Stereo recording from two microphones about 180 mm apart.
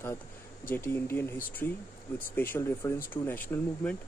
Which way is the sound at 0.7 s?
10° left (ahead or behind).